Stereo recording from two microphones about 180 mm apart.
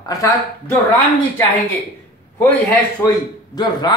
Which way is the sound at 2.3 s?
10° left (ahead or behind).